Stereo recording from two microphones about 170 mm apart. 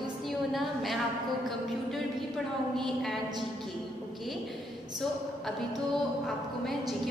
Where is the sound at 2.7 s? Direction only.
Centre (ahead or behind).